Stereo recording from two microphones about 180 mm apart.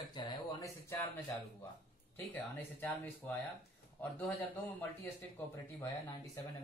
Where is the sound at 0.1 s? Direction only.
20° left (ahead or behind).